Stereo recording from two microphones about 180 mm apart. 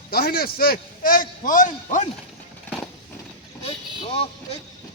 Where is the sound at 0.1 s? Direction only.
60° left (ahead or behind).